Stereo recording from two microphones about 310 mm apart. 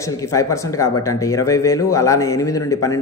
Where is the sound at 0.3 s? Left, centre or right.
Centre.